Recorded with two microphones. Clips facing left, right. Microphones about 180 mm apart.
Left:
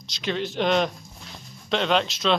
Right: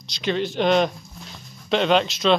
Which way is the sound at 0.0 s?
Centre (ahead or behind).